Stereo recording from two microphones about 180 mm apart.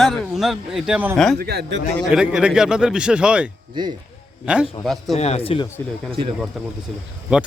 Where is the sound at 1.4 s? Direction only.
60° right (ahead or behind).